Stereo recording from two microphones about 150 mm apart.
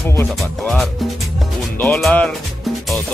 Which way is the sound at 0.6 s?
Centre (ahead or behind).